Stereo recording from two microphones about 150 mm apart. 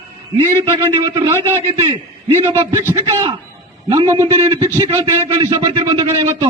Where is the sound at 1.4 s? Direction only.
15° left (ahead or behind).